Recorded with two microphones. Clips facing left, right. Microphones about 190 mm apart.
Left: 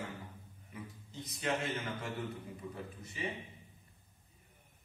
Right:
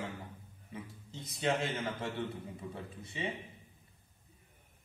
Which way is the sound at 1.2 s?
25° right (ahead or behind).